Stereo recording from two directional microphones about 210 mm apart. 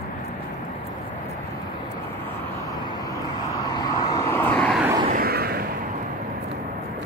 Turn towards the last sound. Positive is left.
turn(degrees=-45)  # may be behind; listen again after turning